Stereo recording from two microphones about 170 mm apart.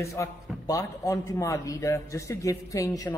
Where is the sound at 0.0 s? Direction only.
15° left (ahead or behind).